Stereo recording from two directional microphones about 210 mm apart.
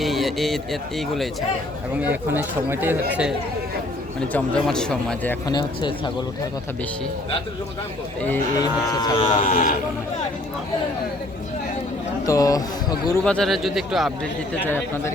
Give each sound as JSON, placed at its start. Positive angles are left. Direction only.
{"t": 0.0, "sound": "speech", "side_deg": 0}
{"t": 4.3, "sound": "speech", "side_deg": 5}
{"t": 5.5, "sound": "speech", "side_deg": 20}
{"t": 8.2, "sound": "speech", "side_deg": 10}
{"t": 9.4, "sound": "speech", "side_deg": 40}
{"t": 12.2, "sound": "speech", "side_deg": 15}
{"t": 13.2, "sound": "speech", "side_deg": 5}
{"t": 14.6, "sound": "speech", "side_deg": 10}